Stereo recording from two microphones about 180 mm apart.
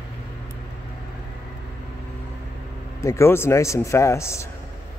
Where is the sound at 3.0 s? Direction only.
15° left (ahead or behind).